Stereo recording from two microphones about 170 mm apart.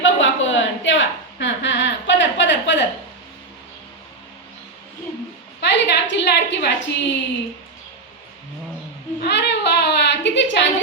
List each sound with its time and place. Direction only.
0.2 s a woman's voice: 90° left
5.5 s a woman's voice: 90° left
9.2 s a woman's voice: 90° left